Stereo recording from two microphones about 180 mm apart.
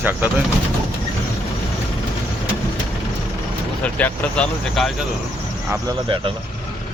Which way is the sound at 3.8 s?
5° left (ahead or behind).